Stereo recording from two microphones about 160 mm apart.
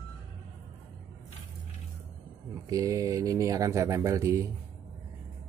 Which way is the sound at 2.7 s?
20° right (ahead or behind).